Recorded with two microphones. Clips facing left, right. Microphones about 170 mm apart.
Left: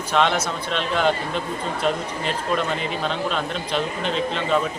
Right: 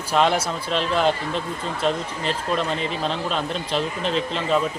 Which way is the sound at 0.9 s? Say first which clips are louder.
Left 2 dB; centre (ahead or behind).